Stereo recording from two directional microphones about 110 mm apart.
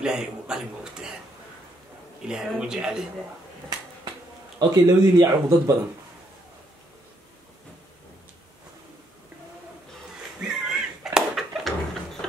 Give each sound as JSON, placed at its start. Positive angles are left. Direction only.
{"t": 0.0, "sound": "speech", "side_deg": -5}
{"t": 2.2, "sound": "speech", "side_deg": -5}
{"t": 4.6, "sound": "speech", "side_deg": -35}
{"t": 10.6, "sound": "a sound", "side_deg": -5}